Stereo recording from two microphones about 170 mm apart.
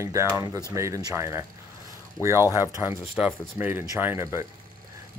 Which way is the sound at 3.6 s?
10° right (ahead or behind).